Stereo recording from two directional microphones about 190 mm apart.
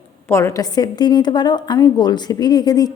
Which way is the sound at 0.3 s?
15° left (ahead or behind).